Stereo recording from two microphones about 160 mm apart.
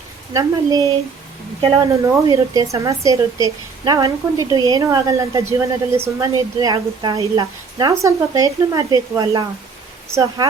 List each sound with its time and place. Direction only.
0.3 s a woman's voice: 20° right (ahead or behind)
2.2 s a woman's voice: 25° right (ahead or behind)